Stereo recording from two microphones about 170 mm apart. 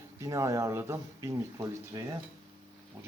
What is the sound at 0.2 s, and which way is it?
Speech, 20° right (ahead or behind).